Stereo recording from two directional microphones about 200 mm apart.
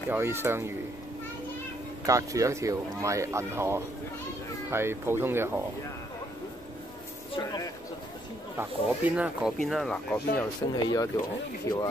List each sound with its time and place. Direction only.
0.1 s speech: 10° right (ahead or behind)
2.0 s speech: 15° right (ahead or behind)
7.3 s speech: 20° left (ahead or behind)
8.5 s speech: 5° right (ahead or behind)
10.7 s speech: 20° left (ahead or behind)